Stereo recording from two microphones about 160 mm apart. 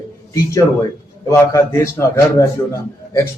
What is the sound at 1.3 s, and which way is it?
A man's voice, 20° left (ahead or behind).